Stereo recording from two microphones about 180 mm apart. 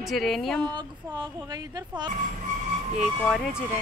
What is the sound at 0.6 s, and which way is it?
Speech, 25° right (ahead or behind).